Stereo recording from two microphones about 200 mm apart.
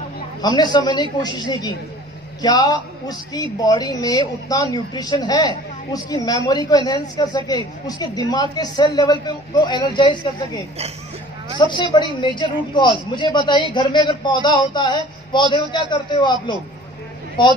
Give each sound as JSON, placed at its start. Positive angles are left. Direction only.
{"t": 0.4, "sound": "a woman's voice", "side_deg": 20}
{"t": 11.6, "sound": "a woman's voice", "side_deg": 25}
{"t": 17.4, "sound": "a woman's voice", "side_deg": 25}